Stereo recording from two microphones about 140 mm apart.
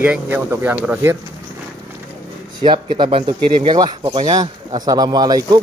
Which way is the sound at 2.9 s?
35° right (ahead or behind).